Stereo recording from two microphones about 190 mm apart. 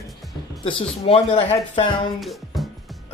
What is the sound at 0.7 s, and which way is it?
Speech, 30° left (ahead or behind).